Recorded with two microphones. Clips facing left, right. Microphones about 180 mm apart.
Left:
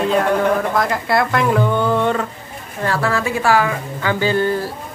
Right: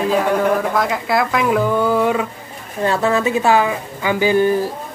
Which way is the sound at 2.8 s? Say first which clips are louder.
Right 3 dB; 20° right (ahead or behind).